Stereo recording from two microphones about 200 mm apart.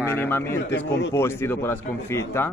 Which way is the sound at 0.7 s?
65° left (ahead or behind).